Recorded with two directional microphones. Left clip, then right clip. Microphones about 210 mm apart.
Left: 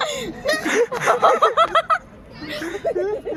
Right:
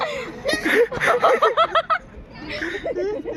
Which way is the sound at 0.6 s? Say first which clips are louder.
Right 3 dB; 5° left (ahead or behind).